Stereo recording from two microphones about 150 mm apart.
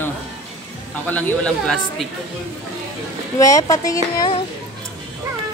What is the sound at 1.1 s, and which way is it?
Speech, 5° left (ahead or behind).